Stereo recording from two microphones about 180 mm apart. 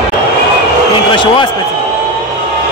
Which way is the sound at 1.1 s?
25° left (ahead or behind).